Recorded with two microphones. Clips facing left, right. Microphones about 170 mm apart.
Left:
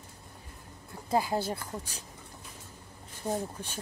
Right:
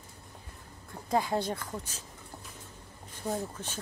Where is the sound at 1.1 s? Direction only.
5° left (ahead or behind).